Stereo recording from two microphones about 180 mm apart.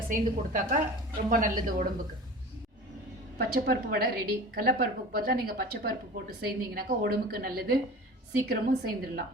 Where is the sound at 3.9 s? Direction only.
60° right (ahead or behind).